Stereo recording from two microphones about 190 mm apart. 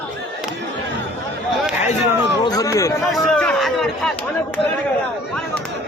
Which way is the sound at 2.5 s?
20° left (ahead or behind).